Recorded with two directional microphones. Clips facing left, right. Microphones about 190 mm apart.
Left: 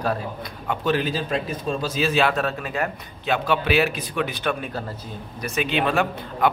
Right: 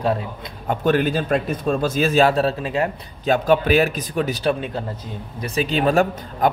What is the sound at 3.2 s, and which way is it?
A man's voice, 45° right (ahead or behind).